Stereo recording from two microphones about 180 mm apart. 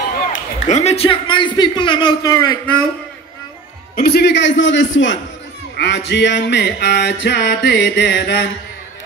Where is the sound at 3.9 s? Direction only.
60° left (ahead or behind); by 5.2 s 90° left.